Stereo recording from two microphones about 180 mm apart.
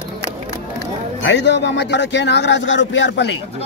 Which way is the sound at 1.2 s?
70° left (ahead or behind).